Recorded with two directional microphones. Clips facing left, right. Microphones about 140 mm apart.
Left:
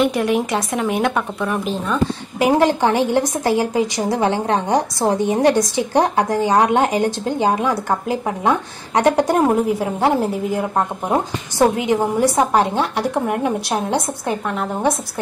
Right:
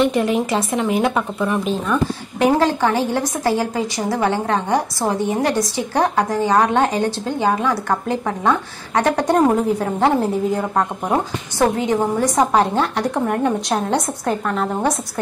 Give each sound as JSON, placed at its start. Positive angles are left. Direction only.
{"t": 0.0, "sound": "a woman's voice", "side_deg": 0}